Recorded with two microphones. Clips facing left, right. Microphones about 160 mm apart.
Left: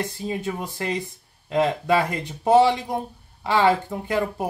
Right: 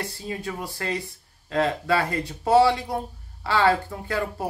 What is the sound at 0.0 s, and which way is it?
Speech, 20° left (ahead or behind).